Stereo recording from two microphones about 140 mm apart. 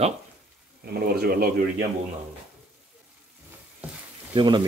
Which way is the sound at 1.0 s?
90° right.